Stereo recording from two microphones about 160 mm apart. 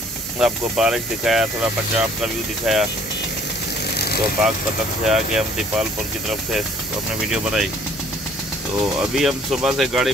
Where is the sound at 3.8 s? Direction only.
80° left.